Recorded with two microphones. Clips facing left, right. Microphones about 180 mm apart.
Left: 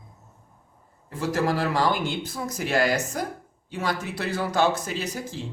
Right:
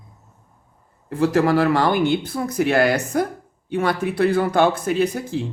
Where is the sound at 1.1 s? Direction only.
60° right (ahead or behind).